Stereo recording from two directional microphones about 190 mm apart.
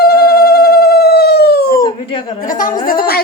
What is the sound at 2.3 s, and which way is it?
Speech, 45° left (ahead or behind).